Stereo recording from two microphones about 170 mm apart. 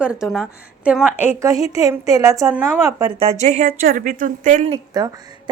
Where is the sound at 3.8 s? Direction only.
55° right (ahead or behind).